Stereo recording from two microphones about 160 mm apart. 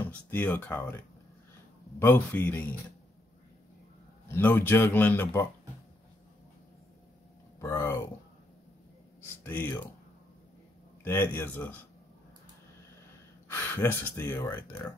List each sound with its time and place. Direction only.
0.3 s a man's voice: 10° left (ahead or behind)
4.3 s a man's voice: 10° left (ahead or behind)
7.6 s speech: 20° left (ahead or behind)
9.4 s speech: 15° left (ahead or behind)
11.3 s a man's voice: 10° left (ahead or behind)
13.5 s speech: 15° left (ahead or behind)